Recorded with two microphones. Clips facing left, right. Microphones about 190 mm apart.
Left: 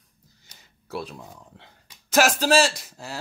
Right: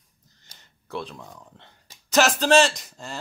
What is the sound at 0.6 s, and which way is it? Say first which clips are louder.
Speech: even; 10° left (ahead or behind).